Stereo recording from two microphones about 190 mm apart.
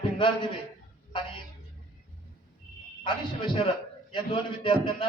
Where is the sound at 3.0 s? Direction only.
25° left (ahead or behind).